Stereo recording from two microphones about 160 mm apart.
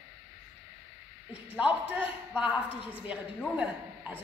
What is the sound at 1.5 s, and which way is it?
A woman's voice, 10° right (ahead or behind).